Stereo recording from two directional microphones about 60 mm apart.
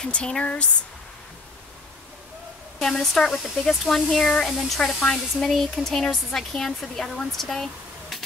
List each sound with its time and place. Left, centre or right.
0.0 s speech: centre
2.8 s speech: centre
4.5 s speech: centre